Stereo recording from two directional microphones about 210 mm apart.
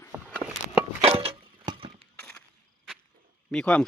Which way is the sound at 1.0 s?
25° right (ahead or behind).